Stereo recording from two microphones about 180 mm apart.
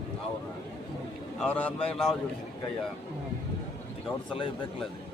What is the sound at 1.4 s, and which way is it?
Speech, 10° left (ahead or behind).